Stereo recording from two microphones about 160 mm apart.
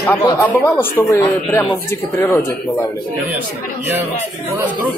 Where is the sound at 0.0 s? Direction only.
15° left (ahead or behind).